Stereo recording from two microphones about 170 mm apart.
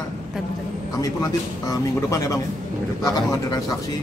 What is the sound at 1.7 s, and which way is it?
A man's voice, 20° left (ahead or behind).